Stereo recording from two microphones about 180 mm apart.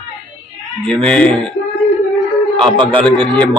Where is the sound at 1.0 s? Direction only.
5° left (ahead or behind).